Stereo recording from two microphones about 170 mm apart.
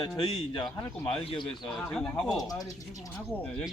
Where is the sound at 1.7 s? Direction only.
5° left (ahead or behind).